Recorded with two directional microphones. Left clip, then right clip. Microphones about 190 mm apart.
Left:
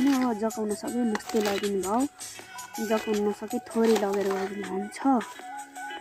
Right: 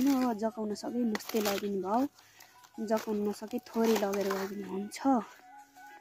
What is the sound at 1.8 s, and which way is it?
Speech, 25° right (ahead or behind).